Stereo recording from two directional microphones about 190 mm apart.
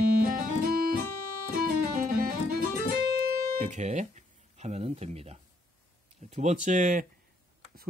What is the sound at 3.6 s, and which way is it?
Speech, 40° right (ahead or behind).